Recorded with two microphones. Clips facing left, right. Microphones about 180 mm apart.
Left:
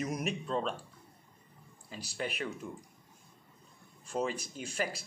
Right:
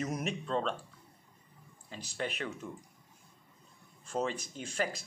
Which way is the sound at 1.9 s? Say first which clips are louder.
Even; 10° left (ahead or behind).